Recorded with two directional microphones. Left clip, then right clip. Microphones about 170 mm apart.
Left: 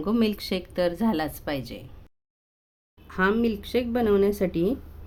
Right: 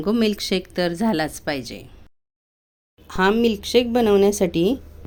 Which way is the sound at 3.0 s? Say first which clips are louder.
Right 5 dB; 20° right (ahead or behind).